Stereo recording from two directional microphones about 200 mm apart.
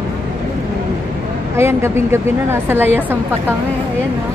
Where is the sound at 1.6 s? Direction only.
10° right (ahead or behind).